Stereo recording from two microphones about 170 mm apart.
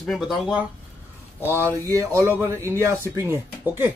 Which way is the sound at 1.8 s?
20° right (ahead or behind).